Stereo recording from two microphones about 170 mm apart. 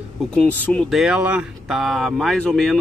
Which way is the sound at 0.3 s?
10° left (ahead or behind).